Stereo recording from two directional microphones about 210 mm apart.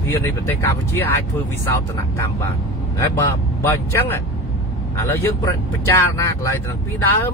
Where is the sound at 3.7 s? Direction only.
10° left (ahead or behind).